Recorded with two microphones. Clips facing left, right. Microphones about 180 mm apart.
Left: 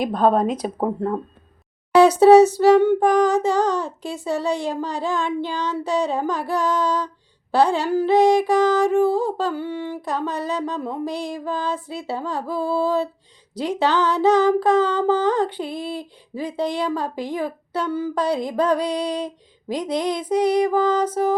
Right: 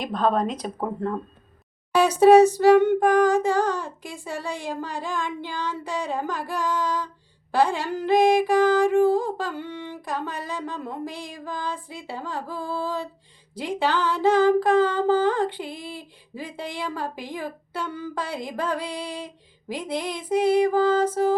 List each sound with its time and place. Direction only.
0.3 s speech: 10° left (ahead or behind)
0.8 s speech: 30° left (ahead or behind)
2.0 s a sound: 10° right (ahead or behind)